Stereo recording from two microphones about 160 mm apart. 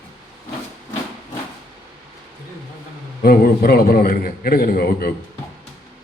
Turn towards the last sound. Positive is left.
turn(degrees=65)  # may be behind; listen again after turning